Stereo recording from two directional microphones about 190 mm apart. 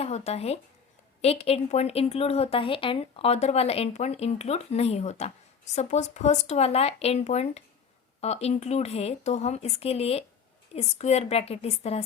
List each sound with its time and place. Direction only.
0.0 s a woman's voice: 35° left (ahead or behind)